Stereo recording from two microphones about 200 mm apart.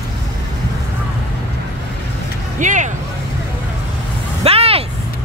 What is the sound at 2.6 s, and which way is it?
Vehicle, 40° right (ahead or behind).